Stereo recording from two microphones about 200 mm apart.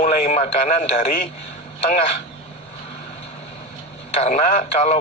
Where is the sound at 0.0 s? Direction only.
40° left (ahead or behind).